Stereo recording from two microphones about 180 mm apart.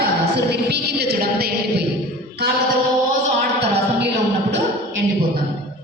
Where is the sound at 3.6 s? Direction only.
70° right (ahead or behind).